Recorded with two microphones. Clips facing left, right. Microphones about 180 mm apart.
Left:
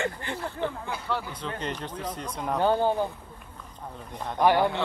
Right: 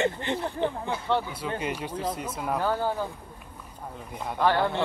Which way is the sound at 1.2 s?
10° right (ahead or behind).